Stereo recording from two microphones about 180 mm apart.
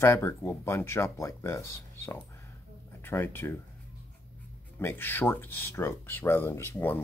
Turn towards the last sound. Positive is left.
turn(degrees=15)  # may be behind; listen again after turning